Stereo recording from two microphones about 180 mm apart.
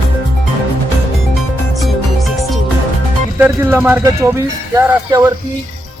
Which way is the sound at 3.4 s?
10° right (ahead or behind).